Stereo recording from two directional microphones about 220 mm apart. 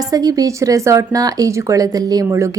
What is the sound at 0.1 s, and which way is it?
Speech, 15° right (ahead or behind).